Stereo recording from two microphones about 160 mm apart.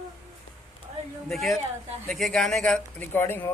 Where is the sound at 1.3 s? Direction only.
Centre (ahead or behind).